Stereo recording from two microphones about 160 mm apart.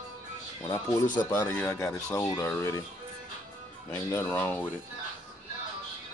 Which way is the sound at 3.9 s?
15° left (ahead or behind).